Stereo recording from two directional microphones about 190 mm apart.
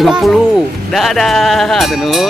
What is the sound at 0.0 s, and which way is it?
Speech, centre (ahead or behind).